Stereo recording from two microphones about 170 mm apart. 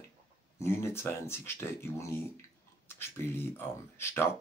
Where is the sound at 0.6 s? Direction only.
15° left (ahead or behind).